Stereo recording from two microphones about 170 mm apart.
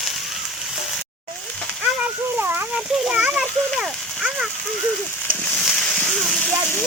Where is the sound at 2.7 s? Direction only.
Centre (ahead or behind).